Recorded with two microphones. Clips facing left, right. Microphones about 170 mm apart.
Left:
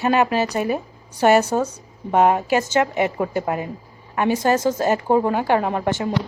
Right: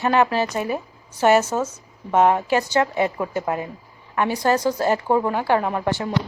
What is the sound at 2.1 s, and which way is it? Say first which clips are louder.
A woman's voice: left 1 dB; 15° left (ahead or behind).